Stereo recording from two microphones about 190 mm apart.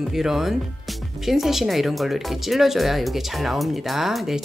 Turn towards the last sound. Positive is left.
turn(degrees=0)  # may be behind; listen again after turning